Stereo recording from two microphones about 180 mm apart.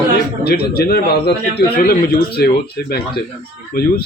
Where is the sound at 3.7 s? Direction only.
55° left (ahead or behind).